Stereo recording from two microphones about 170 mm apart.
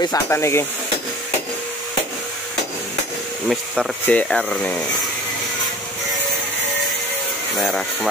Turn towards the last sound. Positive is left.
turn(degrees=0)  # may be behind; listen again after turning